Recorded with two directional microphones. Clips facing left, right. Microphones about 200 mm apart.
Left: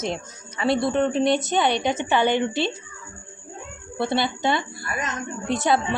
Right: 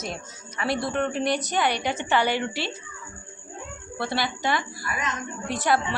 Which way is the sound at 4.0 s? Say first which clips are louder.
Left 5 dB; 25° left (ahead or behind).